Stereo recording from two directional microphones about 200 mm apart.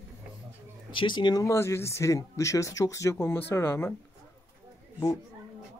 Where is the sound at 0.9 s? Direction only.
25° left (ahead or behind).